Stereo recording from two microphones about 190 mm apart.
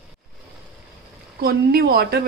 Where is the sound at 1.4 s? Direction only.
55° right (ahead or behind).